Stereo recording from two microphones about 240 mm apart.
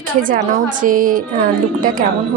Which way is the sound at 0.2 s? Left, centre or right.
Right.